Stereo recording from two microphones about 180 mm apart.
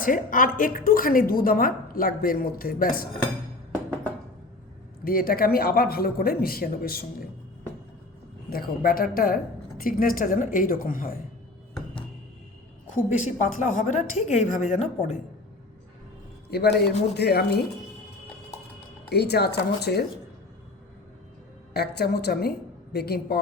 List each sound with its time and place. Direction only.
0.0 s a woman's voice: 50° left (ahead or behind)
5.0 s speech: 55° left (ahead or behind)
8.4 s a woman's voice: 55° left (ahead or behind)
13.1 s a woman's voice: 45° left (ahead or behind)
16.5 s speech: 60° left (ahead or behind)
19.0 s speech: 65° left (ahead or behind)
21.7 s a woman's voice: 65° left (ahead or behind)